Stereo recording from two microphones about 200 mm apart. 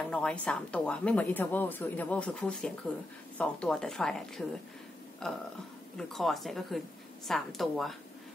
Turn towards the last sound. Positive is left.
turn(degrees=0)  # may be behind; listen again after turning